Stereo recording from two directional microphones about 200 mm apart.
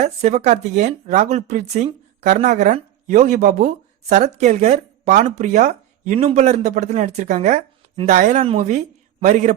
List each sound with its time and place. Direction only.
0.0 s speech: 35° right (ahead or behind)